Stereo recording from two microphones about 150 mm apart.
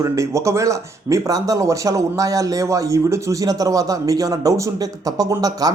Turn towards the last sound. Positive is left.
turn(degrees=-25)  # may be behind; listen again after turning